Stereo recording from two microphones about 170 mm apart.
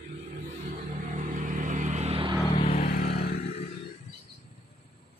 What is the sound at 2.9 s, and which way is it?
Vehicle, 55° left (ahead or behind).